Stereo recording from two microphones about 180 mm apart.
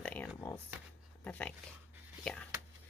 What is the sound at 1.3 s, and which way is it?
Speech, 5° left (ahead or behind).